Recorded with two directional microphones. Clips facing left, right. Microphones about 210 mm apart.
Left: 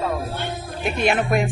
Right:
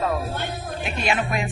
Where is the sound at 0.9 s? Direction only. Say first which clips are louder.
Left 5 dB; 55° left (ahead or behind).